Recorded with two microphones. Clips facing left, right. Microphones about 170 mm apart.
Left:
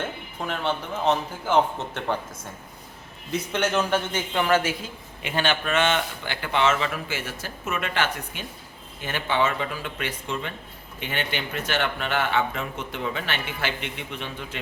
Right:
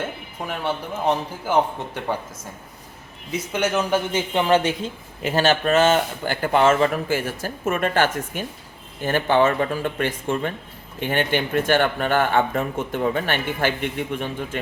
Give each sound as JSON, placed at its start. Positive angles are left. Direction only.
{"t": 0.0, "sound": "speech", "side_deg": -10}
{"t": 3.5, "sound": "speech", "side_deg": -5}
{"t": 5.2, "sound": "speech", "side_deg": -40}